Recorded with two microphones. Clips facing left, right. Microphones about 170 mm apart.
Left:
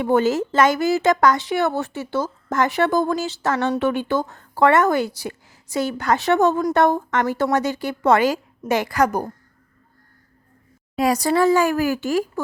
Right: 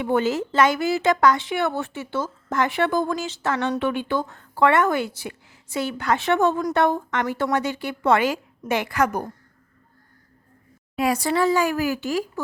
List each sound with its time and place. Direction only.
0.0 s speech: 40° left (ahead or behind)
10.9 s speech: 40° left (ahead or behind)